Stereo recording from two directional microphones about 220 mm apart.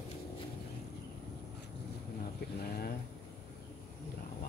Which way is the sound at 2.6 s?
45° left (ahead or behind).